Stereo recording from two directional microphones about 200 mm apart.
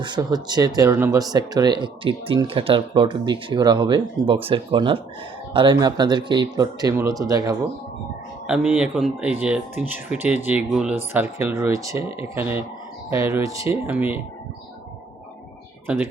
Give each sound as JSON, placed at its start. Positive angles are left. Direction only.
{"t": 0.0, "sound": "speech", "side_deg": -20}
{"t": 8.4, "sound": "speech", "side_deg": -5}
{"t": 15.9, "sound": "speech", "side_deg": -10}